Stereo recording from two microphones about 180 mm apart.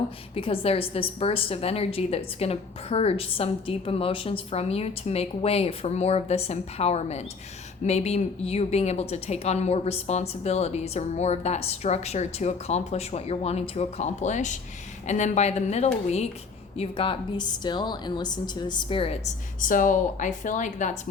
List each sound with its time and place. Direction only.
0.3 s a woman's voice: 30° left (ahead or behind)
19.6 s a woman's voice: 45° left (ahead or behind)